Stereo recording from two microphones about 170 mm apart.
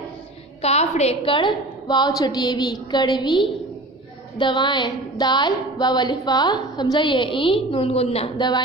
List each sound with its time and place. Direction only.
0.6 s a woman's voice: 40° left (ahead or behind)